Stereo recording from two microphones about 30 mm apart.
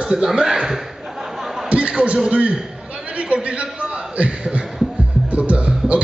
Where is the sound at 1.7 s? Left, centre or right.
Right.